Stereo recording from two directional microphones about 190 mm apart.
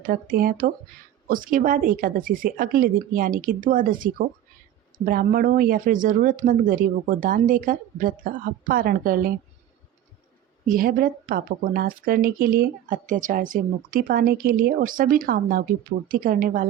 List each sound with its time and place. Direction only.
0.0 s speech: 45° right (ahead or behind)
10.7 s speech: 50° right (ahead or behind)